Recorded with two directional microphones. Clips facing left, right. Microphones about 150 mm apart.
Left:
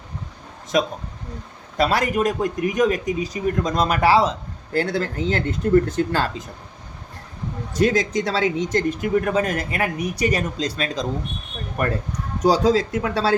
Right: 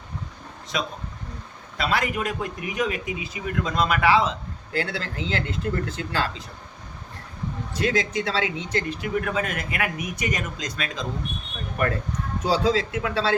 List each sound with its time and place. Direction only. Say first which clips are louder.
0.7 s speech: left 8 dB; 45° left (ahead or behind)
7.7 s speech: left 5 dB; 40° left (ahead or behind)